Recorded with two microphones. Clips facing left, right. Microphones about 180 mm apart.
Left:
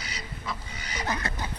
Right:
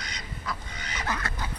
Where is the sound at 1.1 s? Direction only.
20° left (ahead or behind).